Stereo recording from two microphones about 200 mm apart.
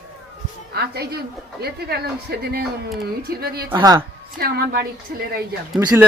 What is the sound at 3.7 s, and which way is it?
Speech, 20° right (ahead or behind).